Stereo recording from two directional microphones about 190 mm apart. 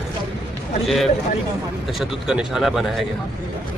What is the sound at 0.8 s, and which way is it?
Speech, centre (ahead or behind).